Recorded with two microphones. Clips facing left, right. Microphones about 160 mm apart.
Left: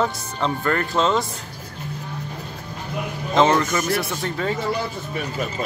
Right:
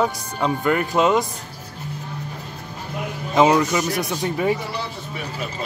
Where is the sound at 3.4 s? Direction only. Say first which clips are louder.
Right 2 dB; 10° right (ahead or behind).